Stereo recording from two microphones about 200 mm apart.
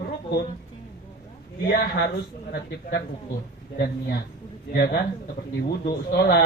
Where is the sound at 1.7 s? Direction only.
50° left (ahead or behind).